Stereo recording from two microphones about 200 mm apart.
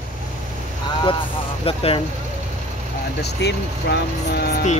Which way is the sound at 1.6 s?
25° left (ahead or behind).